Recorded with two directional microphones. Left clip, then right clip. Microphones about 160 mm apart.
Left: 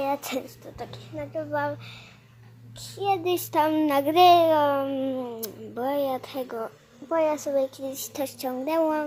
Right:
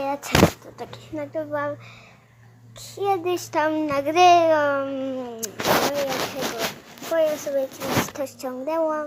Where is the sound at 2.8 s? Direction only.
15° right (ahead or behind).